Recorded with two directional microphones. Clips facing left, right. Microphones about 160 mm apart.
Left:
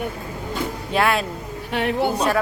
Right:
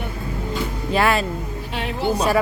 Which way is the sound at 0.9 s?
Centre (ahead or behind).